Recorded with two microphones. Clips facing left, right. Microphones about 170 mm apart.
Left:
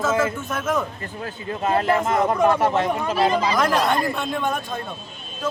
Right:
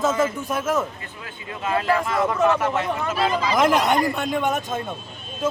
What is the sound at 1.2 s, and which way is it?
Speech, 40° left (ahead or behind).